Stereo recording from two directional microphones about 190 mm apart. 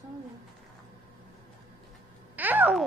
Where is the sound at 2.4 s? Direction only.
10° right (ahead or behind).